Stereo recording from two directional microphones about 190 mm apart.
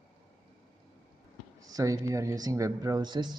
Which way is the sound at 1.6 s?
20° right (ahead or behind).